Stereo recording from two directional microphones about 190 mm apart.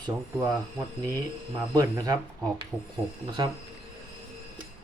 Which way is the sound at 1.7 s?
20° right (ahead or behind).